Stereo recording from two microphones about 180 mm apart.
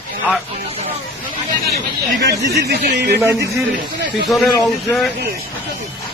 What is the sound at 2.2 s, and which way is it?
Speech, 65° right (ahead or behind).